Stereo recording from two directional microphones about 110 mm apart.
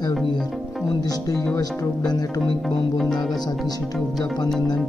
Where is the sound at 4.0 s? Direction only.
Centre (ahead or behind).